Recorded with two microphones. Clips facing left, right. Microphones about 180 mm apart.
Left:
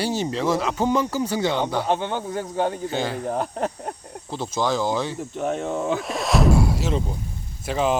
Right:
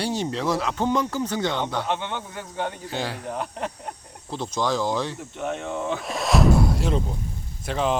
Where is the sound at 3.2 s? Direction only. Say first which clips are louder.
Left 5 dB; 40° left (ahead or behind).